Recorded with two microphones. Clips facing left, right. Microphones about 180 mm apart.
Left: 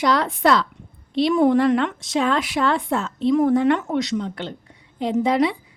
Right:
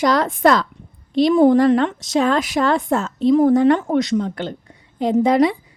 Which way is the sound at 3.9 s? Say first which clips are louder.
Right 5 dB; 50° right (ahead or behind).